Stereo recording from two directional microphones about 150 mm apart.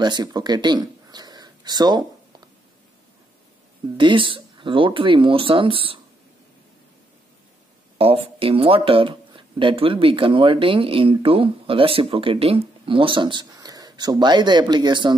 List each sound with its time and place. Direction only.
0.0 s speech: 30° right (ahead or behind)
3.9 s speech: 35° right (ahead or behind)
8.0 s speech: 40° right (ahead or behind)